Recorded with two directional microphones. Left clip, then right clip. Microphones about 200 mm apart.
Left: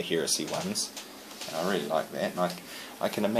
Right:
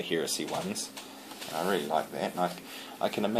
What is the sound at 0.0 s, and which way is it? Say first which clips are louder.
Speech: left 2 dB; 15° left (ahead or behind).